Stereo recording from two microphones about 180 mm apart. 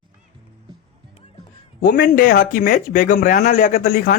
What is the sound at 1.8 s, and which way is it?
Speech, 50° left (ahead or behind).